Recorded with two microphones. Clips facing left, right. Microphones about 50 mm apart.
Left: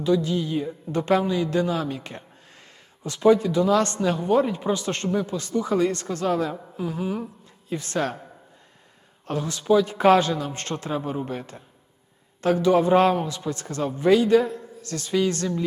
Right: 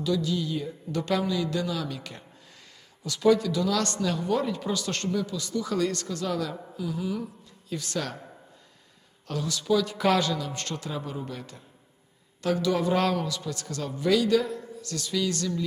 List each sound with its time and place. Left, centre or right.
0.0 s a man's voice: left
9.2 s a man's voice: left